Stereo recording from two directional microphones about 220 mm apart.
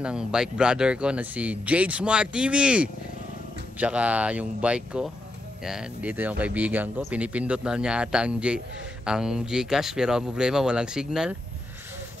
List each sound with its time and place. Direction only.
0.0 s speech: 5° right (ahead or behind)